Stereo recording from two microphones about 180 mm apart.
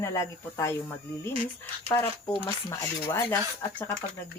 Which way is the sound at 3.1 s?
15° left (ahead or behind).